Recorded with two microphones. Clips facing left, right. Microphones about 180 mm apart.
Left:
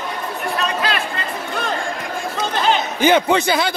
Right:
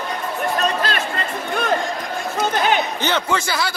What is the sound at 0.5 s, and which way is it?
Chatter, 40° right (ahead or behind).